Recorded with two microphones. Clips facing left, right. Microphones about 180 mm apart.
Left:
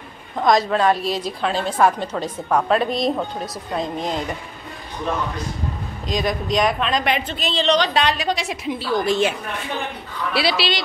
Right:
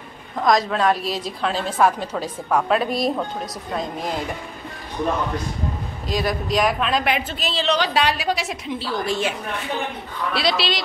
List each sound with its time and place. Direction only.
0.4 s a woman's voice: centre (ahead or behind)
6.0 s a woman's voice: 5° right (ahead or behind)
8.6 s a woman's voice: 15° left (ahead or behind)
10.3 s a woman's voice: 5° left (ahead or behind)